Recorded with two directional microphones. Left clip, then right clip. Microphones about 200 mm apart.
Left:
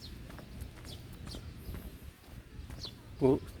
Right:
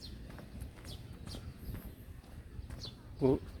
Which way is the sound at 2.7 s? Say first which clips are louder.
Left 3 dB; 20° left (ahead or behind).